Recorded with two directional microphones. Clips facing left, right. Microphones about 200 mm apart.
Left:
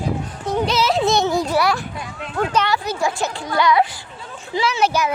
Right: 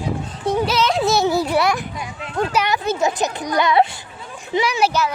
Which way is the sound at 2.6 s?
20° right (ahead or behind).